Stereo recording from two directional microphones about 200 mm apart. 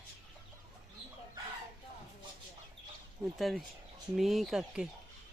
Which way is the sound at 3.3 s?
Centre (ahead or behind).